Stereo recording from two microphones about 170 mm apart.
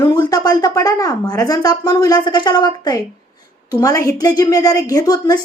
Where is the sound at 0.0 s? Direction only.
25° left (ahead or behind).